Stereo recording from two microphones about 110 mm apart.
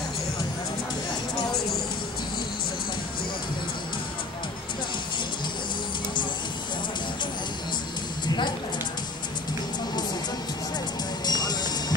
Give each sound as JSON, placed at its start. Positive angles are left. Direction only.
{"t": 11.2, "sound": "music", "side_deg": 40}